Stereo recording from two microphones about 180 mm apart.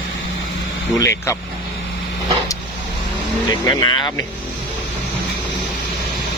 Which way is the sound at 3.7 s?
20° left (ahead or behind).